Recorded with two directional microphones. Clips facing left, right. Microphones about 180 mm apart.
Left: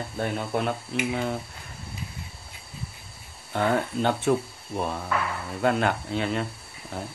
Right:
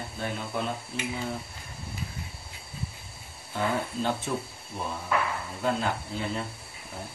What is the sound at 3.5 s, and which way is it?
Speech, 65° left (ahead or behind).